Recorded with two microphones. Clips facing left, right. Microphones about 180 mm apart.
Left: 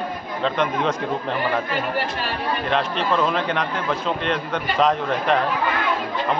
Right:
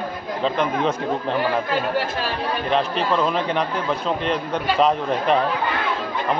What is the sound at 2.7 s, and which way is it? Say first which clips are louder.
A man's voice: right 1 dB; centre (ahead or behind).